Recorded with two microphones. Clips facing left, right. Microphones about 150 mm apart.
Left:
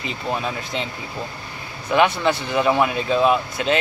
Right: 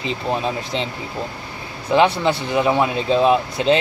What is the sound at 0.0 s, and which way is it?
Speech, 25° right (ahead or behind).